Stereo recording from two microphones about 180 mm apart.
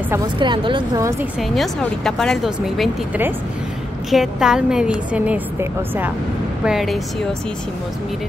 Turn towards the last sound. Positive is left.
turn(degrees=0)  # may be behind; listen again after turning